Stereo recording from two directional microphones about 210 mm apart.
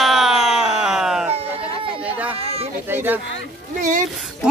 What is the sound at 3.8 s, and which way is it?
Speech, 35° right (ahead or behind).